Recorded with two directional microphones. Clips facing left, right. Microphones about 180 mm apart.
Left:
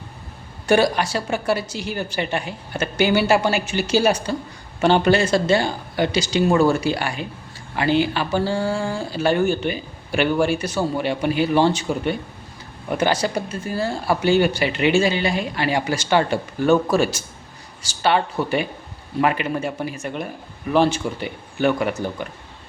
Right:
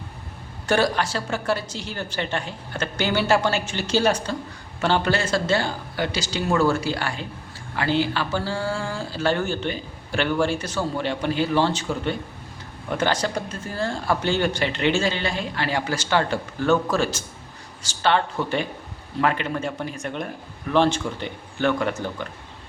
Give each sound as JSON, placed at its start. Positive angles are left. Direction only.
{"t": 0.7, "sound": "speech", "side_deg": 15}